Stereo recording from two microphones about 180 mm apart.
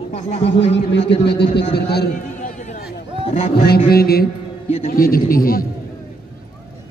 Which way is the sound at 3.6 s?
60° left (ahead or behind).